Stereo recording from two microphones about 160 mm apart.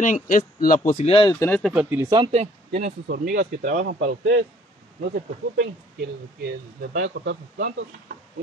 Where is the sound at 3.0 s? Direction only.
70° right (ahead or behind).